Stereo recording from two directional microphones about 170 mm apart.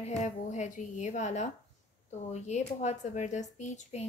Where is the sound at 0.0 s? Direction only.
40° left (ahead or behind).